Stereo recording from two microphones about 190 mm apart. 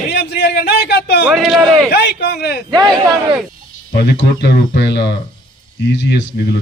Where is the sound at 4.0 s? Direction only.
65° left (ahead or behind).